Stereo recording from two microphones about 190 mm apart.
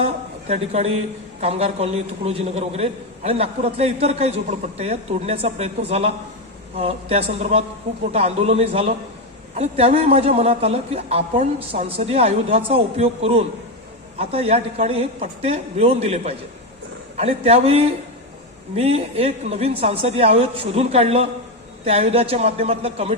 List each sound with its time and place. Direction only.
0.0 s a man's voice: 35° right (ahead or behind)